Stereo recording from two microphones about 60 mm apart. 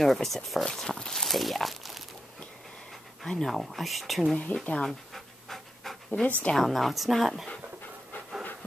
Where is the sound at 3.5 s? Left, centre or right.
Centre.